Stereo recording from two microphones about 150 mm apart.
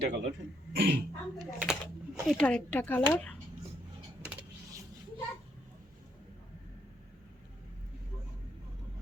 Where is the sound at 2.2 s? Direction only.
5° left (ahead or behind).